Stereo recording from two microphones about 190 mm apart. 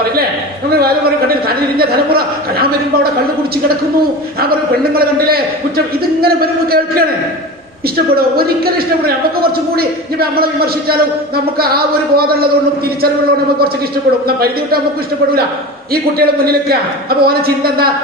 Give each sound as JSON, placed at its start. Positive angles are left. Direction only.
{"t": 0.7, "sound": "a man's voice", "side_deg": -55}
{"t": 4.4, "sound": "a man's voice", "side_deg": -55}
{"t": 8.1, "sound": "a man's voice", "side_deg": -55}
{"t": 14.3, "sound": "a man's voice", "side_deg": -55}
{"t": 15.9, "sound": "a man's voice", "side_deg": -50}